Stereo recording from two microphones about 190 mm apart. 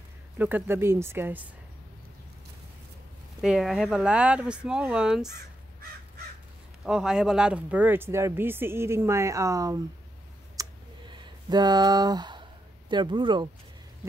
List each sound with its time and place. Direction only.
0.4 s speech: 10° right (ahead or behind)
3.3 s speech: centre (ahead or behind)
6.8 s speech: 5° right (ahead or behind)
10.6 s a sound: 20° right (ahead or behind)
12.9 s speech: 25° right (ahead or behind)